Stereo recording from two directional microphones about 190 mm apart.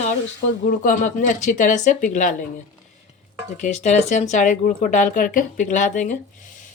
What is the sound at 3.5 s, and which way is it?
Speech, 35° left (ahead or behind).